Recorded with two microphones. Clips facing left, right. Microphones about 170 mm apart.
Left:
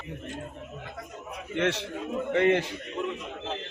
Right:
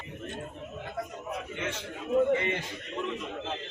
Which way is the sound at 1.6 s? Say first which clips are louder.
Left 8 dB; 75° left (ahead or behind).